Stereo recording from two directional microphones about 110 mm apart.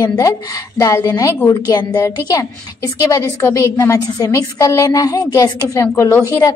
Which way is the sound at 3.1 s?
25° left (ahead or behind).